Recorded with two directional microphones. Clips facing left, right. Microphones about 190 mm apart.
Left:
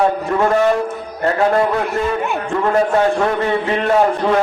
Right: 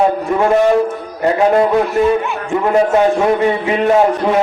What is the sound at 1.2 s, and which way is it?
A man's voice, 15° right (ahead or behind).